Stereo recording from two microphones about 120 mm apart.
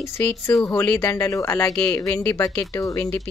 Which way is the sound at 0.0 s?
20° left (ahead or behind).